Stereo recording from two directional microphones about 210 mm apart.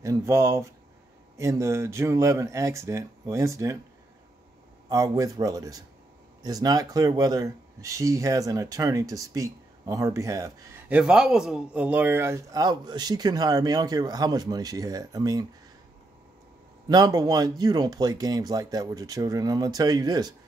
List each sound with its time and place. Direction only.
0.0 s speech: 15° right (ahead or behind)
4.8 s speech: 15° right (ahead or behind)
11.0 s speech: 5° right (ahead or behind)
16.8 s speech: 20° right (ahead or behind)